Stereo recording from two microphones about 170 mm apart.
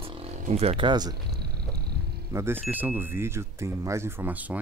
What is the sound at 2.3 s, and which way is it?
Speech, 15° right (ahead or behind).